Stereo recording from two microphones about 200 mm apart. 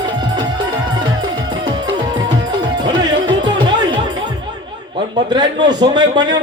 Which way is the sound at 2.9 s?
20° right (ahead or behind).